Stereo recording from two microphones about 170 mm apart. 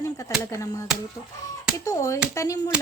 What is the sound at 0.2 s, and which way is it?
Chopping, 20° left (ahead or behind).